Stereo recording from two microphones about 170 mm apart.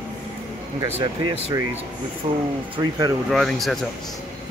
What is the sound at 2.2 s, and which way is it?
Speech, 35° right (ahead or behind).